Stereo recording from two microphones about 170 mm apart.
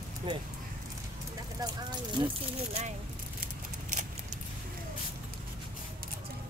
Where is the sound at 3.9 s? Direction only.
45° right (ahead or behind).